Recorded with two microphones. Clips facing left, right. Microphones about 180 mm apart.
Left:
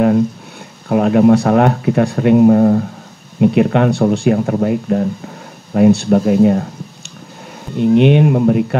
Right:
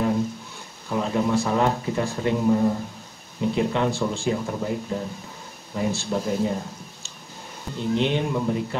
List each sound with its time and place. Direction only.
0.8 s speech: 65° left (ahead or behind)
7.7 s speech: 65° left (ahead or behind)